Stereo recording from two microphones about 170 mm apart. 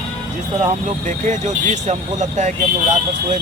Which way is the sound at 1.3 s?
45° right (ahead or behind).